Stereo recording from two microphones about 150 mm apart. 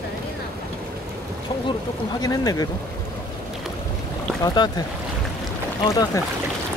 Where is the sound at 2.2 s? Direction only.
25° left (ahead or behind).